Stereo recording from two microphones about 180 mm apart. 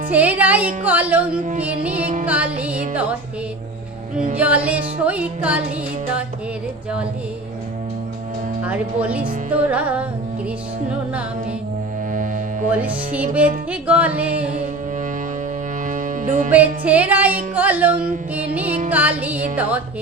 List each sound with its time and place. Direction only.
0.1 s music: 10° right (ahead or behind)
4.4 s music: 10° right (ahead or behind)
8.6 s music: 10° right (ahead or behind)
12.1 s music: 45° right (ahead or behind)
12.7 s music: 10° right (ahead or behind)
15.9 s music: 45° right (ahead or behind)
16.5 s music: 10° right (ahead or behind)